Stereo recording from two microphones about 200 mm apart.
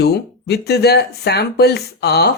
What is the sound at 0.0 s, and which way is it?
Speech, 55° left (ahead or behind).